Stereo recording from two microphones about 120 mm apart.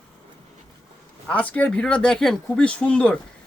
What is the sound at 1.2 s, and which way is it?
Speech, 10° left (ahead or behind).